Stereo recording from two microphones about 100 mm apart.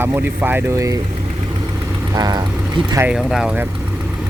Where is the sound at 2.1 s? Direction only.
40° right (ahead or behind).